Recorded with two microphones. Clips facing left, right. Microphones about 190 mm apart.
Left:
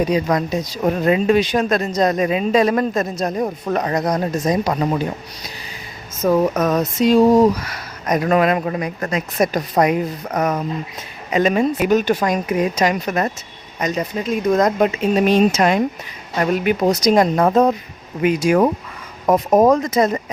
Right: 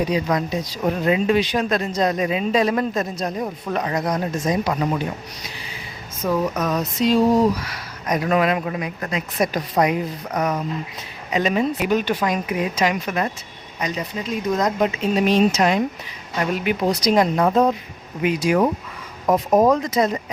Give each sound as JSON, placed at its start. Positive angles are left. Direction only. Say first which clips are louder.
{"t": 0.1, "sound": "a man's voice", "louder": "left 3 dB", "side_deg": 45}
{"t": 6.2, "sound": "a man's voice", "louder": "left 5 dB", "side_deg": 50}